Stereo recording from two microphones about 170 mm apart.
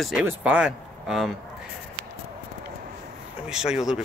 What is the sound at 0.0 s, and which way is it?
Speech, 5° right (ahead or behind).